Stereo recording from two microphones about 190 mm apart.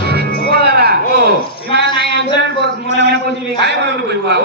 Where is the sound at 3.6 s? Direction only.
60° right (ahead or behind).